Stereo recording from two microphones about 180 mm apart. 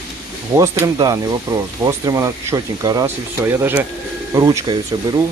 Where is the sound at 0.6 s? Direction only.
20° right (ahead or behind).